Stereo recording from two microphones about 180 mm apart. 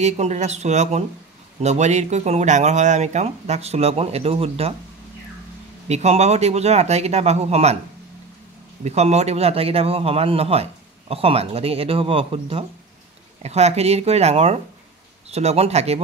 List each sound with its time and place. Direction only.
0.0 s a man's voice: 40° right (ahead or behind)
5.9 s a man's voice: 40° right (ahead or behind)
8.8 s a man's voice: 35° right (ahead or behind)